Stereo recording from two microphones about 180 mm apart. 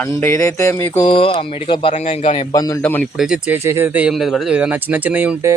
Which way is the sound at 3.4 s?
10° right (ahead or behind).